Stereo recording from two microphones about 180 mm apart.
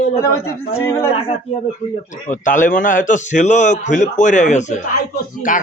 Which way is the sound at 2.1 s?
45° left (ahead or behind).